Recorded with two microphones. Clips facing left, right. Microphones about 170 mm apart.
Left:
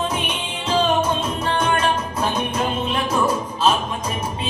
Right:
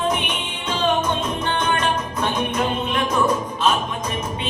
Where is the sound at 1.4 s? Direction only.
30° left (ahead or behind).